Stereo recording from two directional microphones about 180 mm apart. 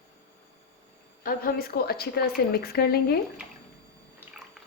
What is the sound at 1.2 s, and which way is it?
A woman's voice, 55° left (ahead or behind).